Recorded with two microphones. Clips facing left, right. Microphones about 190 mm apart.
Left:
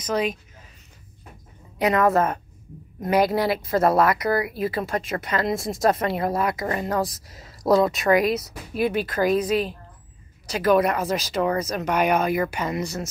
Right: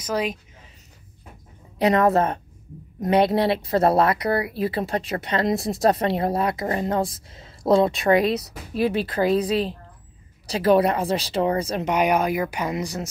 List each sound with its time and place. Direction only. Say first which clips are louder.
0.0 s speech: left 1 dB; 10° right (ahead or behind)
1.8 s speech: right 1 dB; 30° right (ahead or behind); by 13.1 s 15° right (ahead or behind)